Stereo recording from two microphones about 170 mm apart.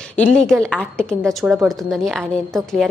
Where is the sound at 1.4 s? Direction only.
5° right (ahead or behind).